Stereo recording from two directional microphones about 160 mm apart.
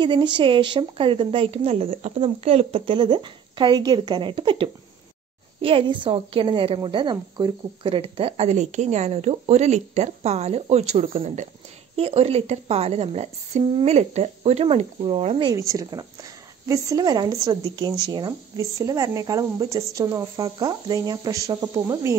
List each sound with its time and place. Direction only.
0.0 s a woman's voice: 30° right (ahead or behind)
15.5 s speech: 20° right (ahead or behind)